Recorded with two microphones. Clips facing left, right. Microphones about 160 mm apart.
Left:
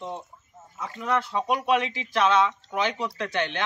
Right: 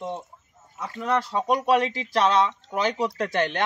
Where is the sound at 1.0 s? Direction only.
35° right (ahead or behind).